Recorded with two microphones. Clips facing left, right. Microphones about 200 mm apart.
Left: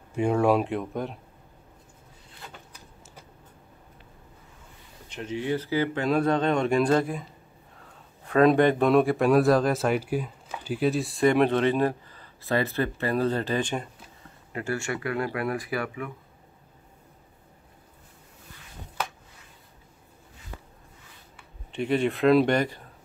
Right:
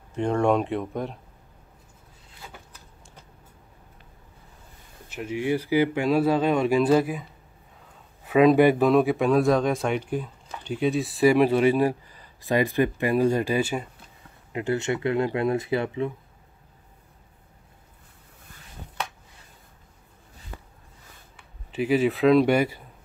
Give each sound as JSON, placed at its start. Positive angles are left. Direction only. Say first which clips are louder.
{"t": 0.1, "sound": "speech", "louder": "even", "side_deg": 10}
{"t": 5.1, "sound": "speech", "louder": "right 3 dB", "side_deg": -10}
{"t": 8.3, "sound": "speech", "louder": "right 2 dB", "side_deg": -5}
{"t": 14.5, "sound": "speech", "louder": "right 4 dB", "side_deg": -20}
{"t": 21.7, "sound": "speech", "louder": "right 3 dB", "side_deg": -5}